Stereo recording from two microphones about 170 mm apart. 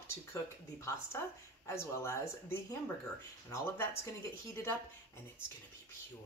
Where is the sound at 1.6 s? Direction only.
15° left (ahead or behind).